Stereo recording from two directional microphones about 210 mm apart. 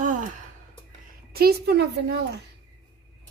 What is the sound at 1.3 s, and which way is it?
Speech, 45° right (ahead or behind).